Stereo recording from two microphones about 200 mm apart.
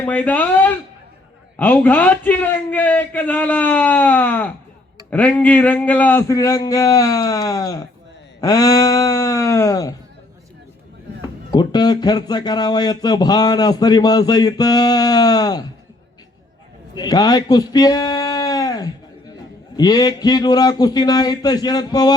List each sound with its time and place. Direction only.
0.0 s a man's voice: 10° left (ahead or behind)
11.5 s a man's voice: 20° left (ahead or behind)
16.9 s a man's voice: 20° left (ahead or behind)